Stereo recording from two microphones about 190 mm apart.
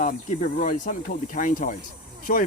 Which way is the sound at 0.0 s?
45° left (ahead or behind).